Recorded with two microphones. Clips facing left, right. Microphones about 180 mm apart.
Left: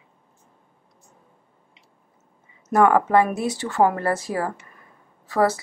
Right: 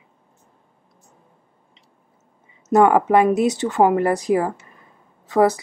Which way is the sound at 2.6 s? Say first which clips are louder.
Right 3 dB; 20° right (ahead or behind).